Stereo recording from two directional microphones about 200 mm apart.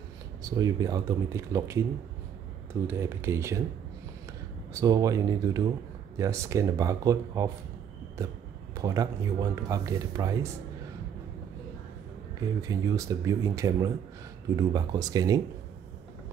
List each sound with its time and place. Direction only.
0.4 s speech: 20° right (ahead or behind)
4.7 s speech: 15° right (ahead or behind)
8.8 s speech: 15° right (ahead or behind)
12.6 s speech: 15° right (ahead or behind)